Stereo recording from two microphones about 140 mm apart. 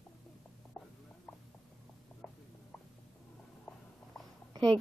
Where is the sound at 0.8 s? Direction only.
5° left (ahead or behind).